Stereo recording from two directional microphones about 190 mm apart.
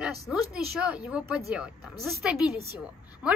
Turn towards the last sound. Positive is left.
turn(degrees=-5)  # may be behind; listen again after turning